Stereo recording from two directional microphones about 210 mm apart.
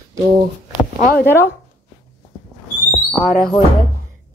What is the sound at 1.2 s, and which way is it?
Speech, 10° left (ahead or behind).